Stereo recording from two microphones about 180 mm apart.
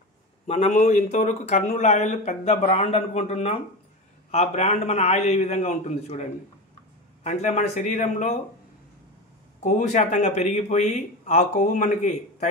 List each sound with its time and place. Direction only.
0.5 s a man's voice: 40° left (ahead or behind)
7.2 s a man's voice: 40° left (ahead or behind)
9.6 s a man's voice: 45° left (ahead or behind)